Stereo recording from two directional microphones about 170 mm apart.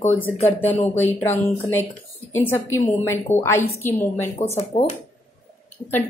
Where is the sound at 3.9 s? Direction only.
40° left (ahead or behind).